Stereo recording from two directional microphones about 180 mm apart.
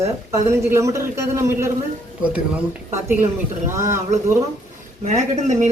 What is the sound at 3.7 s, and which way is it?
Speech, 15° right (ahead or behind).